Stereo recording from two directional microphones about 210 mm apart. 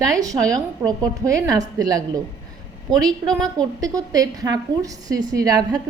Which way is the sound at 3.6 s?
15° right (ahead or behind).